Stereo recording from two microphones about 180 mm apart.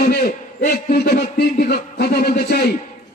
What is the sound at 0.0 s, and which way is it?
Speech, 55° left (ahead or behind).